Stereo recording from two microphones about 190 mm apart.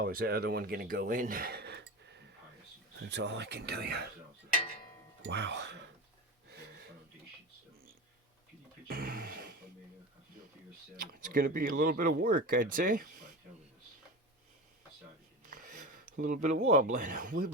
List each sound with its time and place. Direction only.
0.0 s speech: 50° right (ahead or behind)
5.2 s speech: 65° right (ahead or behind)
6.5 s a sound: 55° right (ahead or behind)
8.9 s a sound: 50° right (ahead or behind)
11.1 s speech: 50° right (ahead or behind)
15.4 s speech: 45° right (ahead or behind)